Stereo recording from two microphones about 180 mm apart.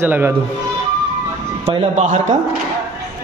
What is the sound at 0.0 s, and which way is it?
Speech, 10° right (ahead or behind).